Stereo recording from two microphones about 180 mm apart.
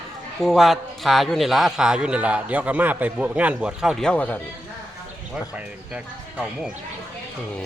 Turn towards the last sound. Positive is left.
turn(degrees=-5)  # may be behind; listen again after turning